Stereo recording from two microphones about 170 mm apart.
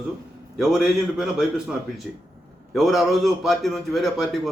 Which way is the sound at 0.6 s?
Centre (ahead or behind).